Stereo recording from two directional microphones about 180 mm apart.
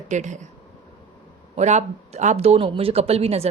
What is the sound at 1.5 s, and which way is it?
Speech, 40° right (ahead or behind).